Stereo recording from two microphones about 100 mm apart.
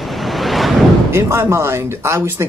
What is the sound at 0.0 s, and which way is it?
Waves, centre (ahead or behind).